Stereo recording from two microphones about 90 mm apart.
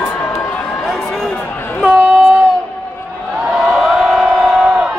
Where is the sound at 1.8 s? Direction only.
15° right (ahead or behind).